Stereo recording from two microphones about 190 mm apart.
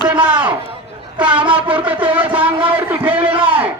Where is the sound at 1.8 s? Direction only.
10° right (ahead or behind).